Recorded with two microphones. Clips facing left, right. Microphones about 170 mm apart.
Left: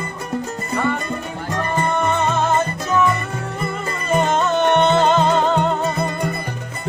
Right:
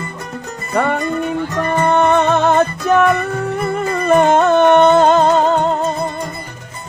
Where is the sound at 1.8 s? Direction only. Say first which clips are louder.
Right 8 dB; 65° right (ahead or behind).